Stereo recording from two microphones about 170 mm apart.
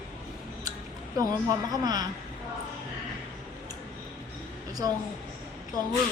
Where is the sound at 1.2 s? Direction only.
20° right (ahead or behind).